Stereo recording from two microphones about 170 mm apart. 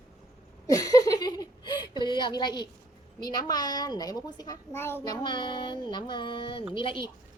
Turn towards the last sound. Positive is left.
turn(degrees=30)  # may be behind; listen again after turning